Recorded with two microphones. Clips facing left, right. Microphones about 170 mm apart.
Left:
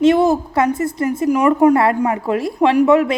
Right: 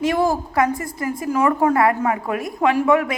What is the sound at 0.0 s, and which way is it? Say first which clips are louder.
A woman's voice: left 6 dB; 20° left (ahead or behind).